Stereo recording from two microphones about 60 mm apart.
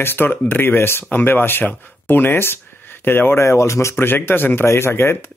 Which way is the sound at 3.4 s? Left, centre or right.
Left.